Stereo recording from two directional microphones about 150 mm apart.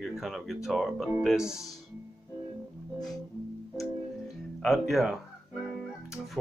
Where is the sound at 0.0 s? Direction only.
Centre (ahead or behind).